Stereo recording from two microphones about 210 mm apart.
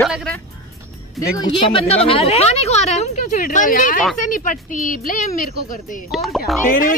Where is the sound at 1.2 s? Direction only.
20° left (ahead or behind); by 5.5 s 40° left (ahead or behind).